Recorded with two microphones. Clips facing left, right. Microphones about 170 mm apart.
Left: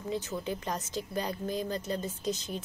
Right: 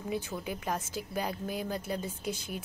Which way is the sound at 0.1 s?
10° right (ahead or behind).